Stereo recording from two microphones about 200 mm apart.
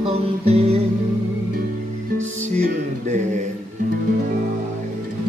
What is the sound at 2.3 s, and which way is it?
Music, 35° right (ahead or behind).